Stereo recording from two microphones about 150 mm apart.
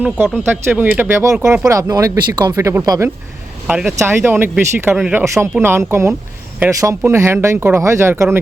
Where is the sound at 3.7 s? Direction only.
10° right (ahead or behind).